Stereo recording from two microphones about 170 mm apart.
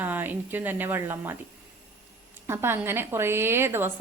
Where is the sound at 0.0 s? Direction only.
10° right (ahead or behind).